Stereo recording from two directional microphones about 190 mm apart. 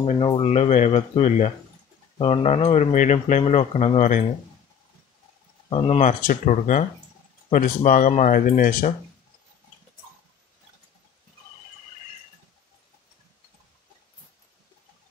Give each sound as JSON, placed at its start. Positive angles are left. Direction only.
{"t": 0.0, "sound": "speech", "side_deg": 30}
{"t": 5.7, "sound": "speech", "side_deg": 30}
{"t": 6.0, "sound": "speech", "side_deg": 40}